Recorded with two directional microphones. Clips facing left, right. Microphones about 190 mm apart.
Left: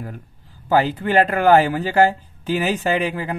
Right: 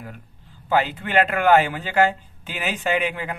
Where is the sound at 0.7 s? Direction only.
40° left (ahead or behind).